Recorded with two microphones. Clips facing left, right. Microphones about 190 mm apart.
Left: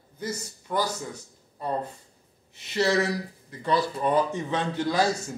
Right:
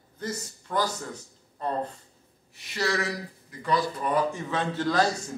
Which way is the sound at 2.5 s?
25° left (ahead or behind).